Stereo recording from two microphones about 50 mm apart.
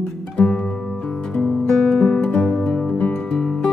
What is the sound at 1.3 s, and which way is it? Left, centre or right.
Music, centre.